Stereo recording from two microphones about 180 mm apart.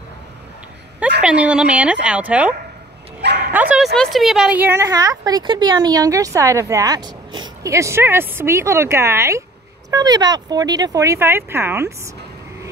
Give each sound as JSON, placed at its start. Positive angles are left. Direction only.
{"t": 1.2, "sound": "a woman's voice", "side_deg": -5}
{"t": 3.2, "sound": "speech", "side_deg": -70}
{"t": 3.5, "sound": "a woman's voice", "side_deg": -5}